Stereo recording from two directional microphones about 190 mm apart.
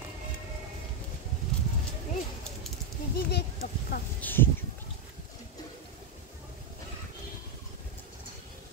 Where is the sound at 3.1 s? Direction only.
55° left (ahead or behind).